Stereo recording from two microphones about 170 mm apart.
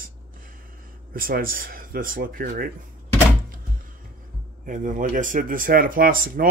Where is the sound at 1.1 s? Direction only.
55° right (ahead or behind).